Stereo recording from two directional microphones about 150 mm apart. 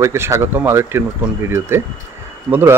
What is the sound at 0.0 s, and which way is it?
A man's voice, 20° right (ahead or behind).